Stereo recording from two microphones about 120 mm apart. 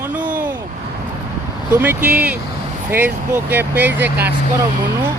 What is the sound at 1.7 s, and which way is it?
Speech, 15° right (ahead or behind).